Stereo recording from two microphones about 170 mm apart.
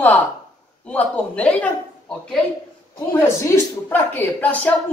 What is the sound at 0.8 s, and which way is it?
A woman's voice, 5° left (ahead or behind).